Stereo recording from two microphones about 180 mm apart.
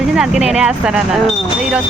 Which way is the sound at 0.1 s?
5° right (ahead or behind).